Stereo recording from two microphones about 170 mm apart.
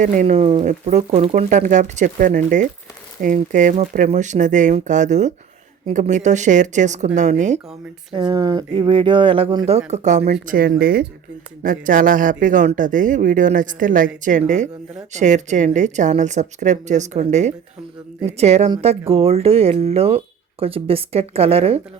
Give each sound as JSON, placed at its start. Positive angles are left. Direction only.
{"t": 0.0, "sound": "speech", "side_deg": -45}
{"t": 8.1, "sound": "speech", "side_deg": -25}
{"t": 10.4, "sound": "speech", "side_deg": -55}
{"t": 11.6, "sound": "speech", "side_deg": -50}